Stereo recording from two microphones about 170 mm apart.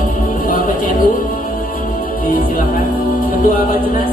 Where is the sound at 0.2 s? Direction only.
55° left (ahead or behind).